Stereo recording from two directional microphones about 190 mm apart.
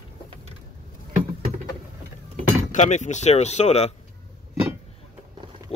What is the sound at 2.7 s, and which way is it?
Speech, 40° left (ahead or behind).